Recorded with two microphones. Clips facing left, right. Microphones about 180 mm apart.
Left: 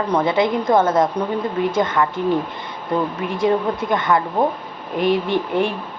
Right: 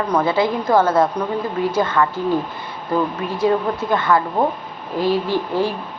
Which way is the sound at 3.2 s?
25° left (ahead or behind).